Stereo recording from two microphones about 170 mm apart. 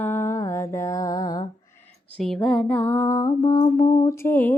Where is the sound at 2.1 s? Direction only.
5° left (ahead or behind).